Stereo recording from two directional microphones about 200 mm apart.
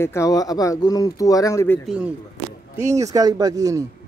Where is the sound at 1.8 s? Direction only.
5° right (ahead or behind).